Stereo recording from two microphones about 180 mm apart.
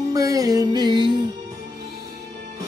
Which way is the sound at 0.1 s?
20° right (ahead or behind).